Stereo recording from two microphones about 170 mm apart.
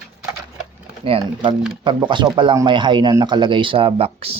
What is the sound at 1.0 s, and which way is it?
Speech, 35° right (ahead or behind).